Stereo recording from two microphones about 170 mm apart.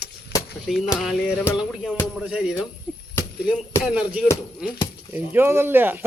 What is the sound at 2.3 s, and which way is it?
Speech, 5° right (ahead or behind).